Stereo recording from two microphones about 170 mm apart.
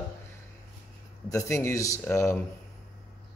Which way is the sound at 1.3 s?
15° left (ahead or behind).